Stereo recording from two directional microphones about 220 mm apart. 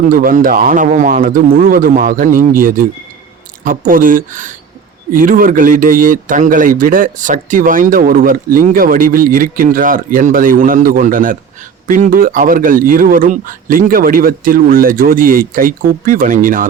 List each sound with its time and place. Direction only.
0.1 s speech: 40° right (ahead or behind)